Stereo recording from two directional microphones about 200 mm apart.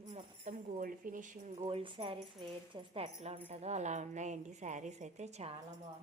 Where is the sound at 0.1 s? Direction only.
40° right (ahead or behind).